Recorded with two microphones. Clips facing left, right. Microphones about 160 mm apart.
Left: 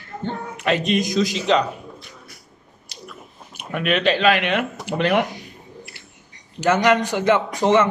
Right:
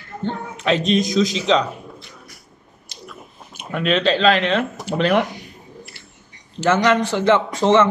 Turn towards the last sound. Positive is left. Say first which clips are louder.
# right 2 dB
turn(degrees=15)  # may be behind; listen again after turning